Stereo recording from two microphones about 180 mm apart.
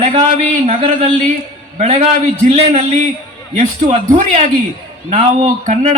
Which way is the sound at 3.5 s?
40° right (ahead or behind).